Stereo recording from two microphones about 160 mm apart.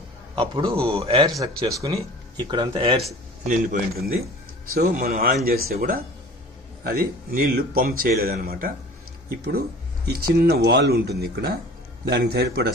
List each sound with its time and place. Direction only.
0.4 s a man's voice: 35° right (ahead or behind)
1.7 s speech: 20° right (ahead or behind)
3.4 s speech: 50° right (ahead or behind)
4.7 s speech: 75° right (ahead or behind)
9.3 s a man's voice: 75° right (ahead or behind)